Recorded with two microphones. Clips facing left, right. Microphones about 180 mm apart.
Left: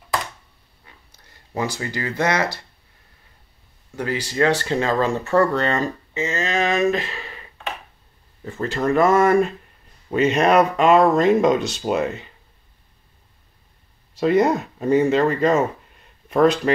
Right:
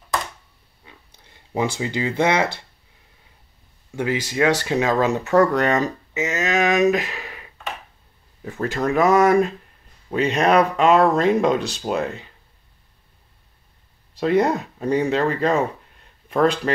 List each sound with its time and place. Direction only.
1.5 s speech: 15° right (ahead or behind)
3.9 s speech: 10° right (ahead or behind)
7.2 s a sound: 10° right (ahead or behind)
8.5 s speech: centre (ahead or behind)
14.2 s speech: centre (ahead or behind)